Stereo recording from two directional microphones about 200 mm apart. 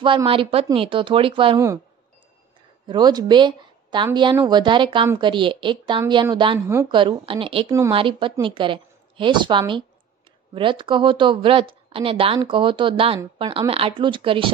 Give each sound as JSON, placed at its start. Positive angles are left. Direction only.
{"t": 0.0, "sound": "a woman's voice", "side_deg": -25}
{"t": 2.9, "sound": "a woman's voice", "side_deg": -20}